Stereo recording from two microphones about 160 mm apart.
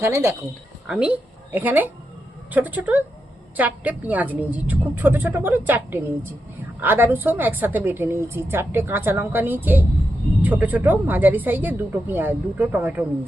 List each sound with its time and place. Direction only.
0.0 s a woman's voice: 15° right (ahead or behind)
0.9 s a woman's voice: 5° right (ahead or behind)